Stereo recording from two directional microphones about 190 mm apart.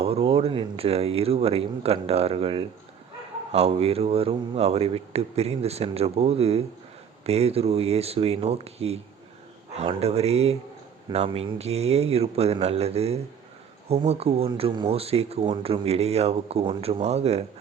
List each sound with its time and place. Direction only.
0.0 s speech: 30° right (ahead or behind)